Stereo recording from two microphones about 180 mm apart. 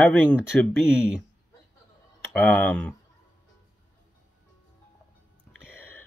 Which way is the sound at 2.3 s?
5° left (ahead or behind).